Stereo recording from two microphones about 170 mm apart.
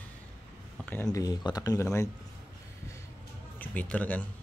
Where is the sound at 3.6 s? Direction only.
10° left (ahead or behind).